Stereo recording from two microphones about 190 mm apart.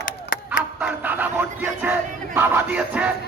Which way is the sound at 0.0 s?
45° left (ahead or behind).